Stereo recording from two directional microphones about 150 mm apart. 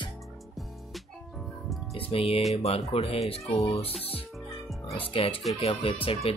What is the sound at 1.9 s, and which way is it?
Speech, 40° left (ahead or behind).